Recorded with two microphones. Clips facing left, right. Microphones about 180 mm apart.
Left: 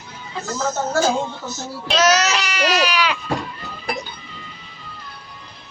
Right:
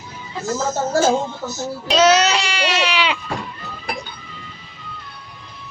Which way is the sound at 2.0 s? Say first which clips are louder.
Right 3 dB; 30° right (ahead or behind).